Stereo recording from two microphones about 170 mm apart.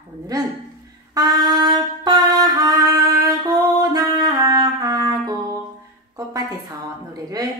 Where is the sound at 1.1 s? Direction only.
25° right (ahead or behind).